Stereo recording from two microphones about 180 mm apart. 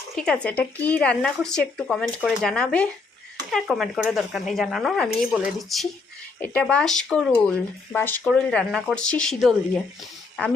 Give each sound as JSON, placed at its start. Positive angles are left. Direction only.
{"t": 0.2, "sound": "speech", "side_deg": 5}